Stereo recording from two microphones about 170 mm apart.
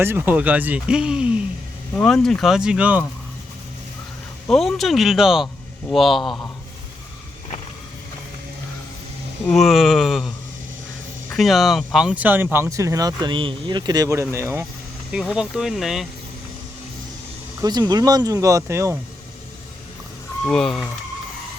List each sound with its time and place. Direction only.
0.0 s speech: 15° right (ahead or behind)
4.4 s speech: centre (ahead or behind)
9.5 s speech: centre (ahead or behind); by 14.7 s 15° right (ahead or behind)
15.4 s speech: 5° right (ahead or behind)
17.6 s speech: 25° right (ahead or behind)
20.4 s speech: 5° left (ahead or behind)